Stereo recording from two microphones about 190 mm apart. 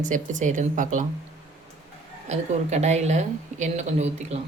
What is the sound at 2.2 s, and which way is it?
Speech, 35° right (ahead or behind).